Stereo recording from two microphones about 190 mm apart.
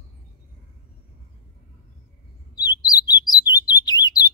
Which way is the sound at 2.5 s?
20° left (ahead or behind).